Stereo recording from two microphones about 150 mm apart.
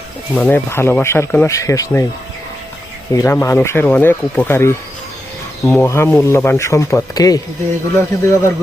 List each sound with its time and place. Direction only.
0.4 s speech: 15° left (ahead or behind)
3.1 s speech: 20° left (ahead or behind)